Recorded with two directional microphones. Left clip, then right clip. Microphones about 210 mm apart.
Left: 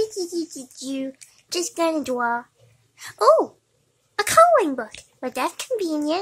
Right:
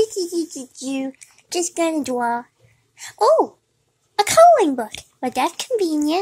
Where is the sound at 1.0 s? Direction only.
5° right (ahead or behind).